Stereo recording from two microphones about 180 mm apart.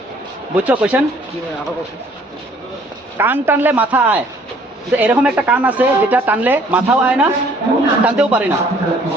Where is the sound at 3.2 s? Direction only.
10° right (ahead or behind).